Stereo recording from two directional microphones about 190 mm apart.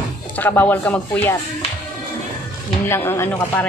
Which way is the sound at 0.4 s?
10° left (ahead or behind).